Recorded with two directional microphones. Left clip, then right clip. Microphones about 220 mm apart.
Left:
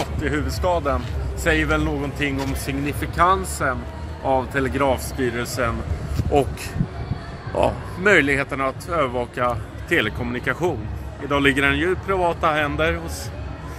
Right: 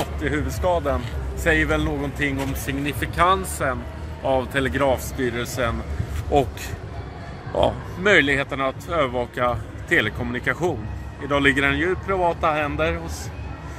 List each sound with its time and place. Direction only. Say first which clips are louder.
0.2 s speech: left 1 dB; centre (ahead or behind)
5.2 s speech: left 1 dB; centre (ahead or behind)
7.5 s speech: even; centre (ahead or behind)